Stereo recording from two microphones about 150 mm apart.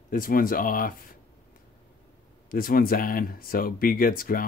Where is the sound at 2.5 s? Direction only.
70° left (ahead or behind).